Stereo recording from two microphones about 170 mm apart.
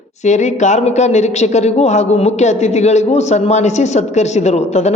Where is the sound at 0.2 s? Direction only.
45° left (ahead or behind).